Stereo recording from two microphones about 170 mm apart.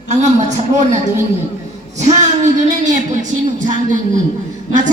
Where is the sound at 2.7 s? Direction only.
45° right (ahead or behind).